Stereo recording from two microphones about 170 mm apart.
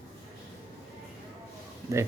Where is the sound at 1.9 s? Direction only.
20° right (ahead or behind).